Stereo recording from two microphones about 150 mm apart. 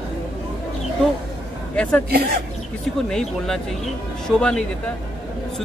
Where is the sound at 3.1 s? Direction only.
5° left (ahead or behind).